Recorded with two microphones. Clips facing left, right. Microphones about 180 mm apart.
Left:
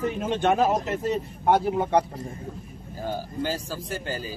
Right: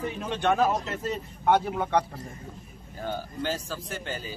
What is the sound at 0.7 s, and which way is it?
Speech, 45° left (ahead or behind).